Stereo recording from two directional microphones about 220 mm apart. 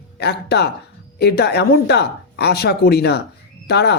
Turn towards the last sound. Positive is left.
turn(degrees=50)  # may be behind; listen again after turning